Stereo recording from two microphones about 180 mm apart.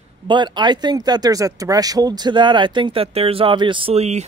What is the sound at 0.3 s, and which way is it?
Speech, 25° right (ahead or behind).